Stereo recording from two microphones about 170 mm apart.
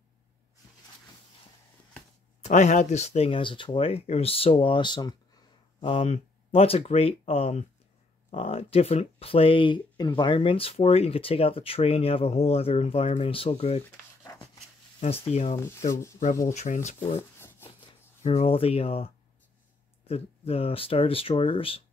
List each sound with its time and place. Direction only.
2.4 s speech: 45° left (ahead or behind)
15.2 s speech: 40° left (ahead or behind)
18.2 s speech: 40° left (ahead or behind)